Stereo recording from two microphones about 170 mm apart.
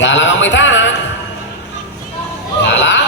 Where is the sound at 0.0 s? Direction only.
90° left.